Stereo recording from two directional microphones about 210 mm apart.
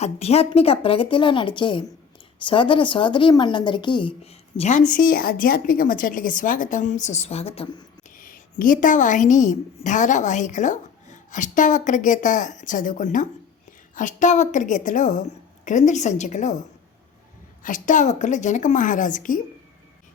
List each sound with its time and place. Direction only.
0.0 s a woman's voice: 30° left (ahead or behind)
4.9 s a woman's voice: 40° left (ahead or behind)
8.1 s a woman's voice: 40° left (ahead or behind)
17.6 s a woman's voice: 40° left (ahead or behind)